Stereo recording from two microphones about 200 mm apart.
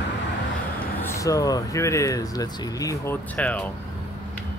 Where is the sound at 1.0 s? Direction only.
15° left (ahead or behind).